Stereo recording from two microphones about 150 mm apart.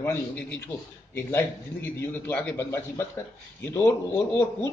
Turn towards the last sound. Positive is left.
turn(degrees=15)  # may be behind; listen again after turning